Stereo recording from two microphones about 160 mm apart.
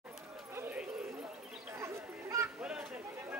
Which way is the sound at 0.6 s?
10° right (ahead or behind).